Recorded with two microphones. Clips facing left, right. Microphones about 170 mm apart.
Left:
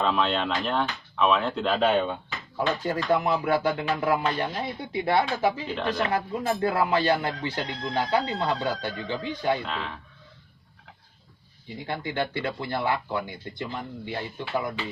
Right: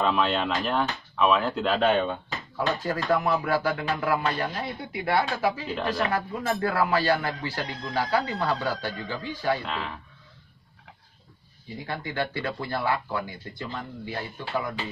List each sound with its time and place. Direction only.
0.0 s speech: centre (ahead or behind)
2.5 s speech: 20° left (ahead or behind)
5.7 s speech: centre (ahead or behind)
6.0 s speech: 20° left (ahead or behind)
9.7 s speech: centre (ahead or behind)
11.8 s speech: 25° left (ahead or behind)